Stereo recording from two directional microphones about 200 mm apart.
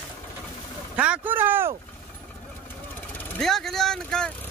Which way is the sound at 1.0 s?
10° right (ahead or behind).